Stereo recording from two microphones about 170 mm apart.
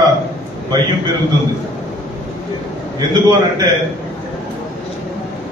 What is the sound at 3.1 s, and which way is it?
Speech, 20° right (ahead or behind).